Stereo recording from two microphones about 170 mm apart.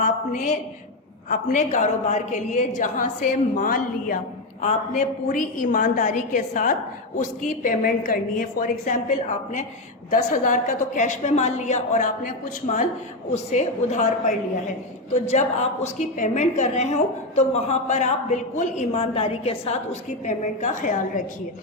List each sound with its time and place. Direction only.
0.0 s a woman's voice: 50° left (ahead or behind)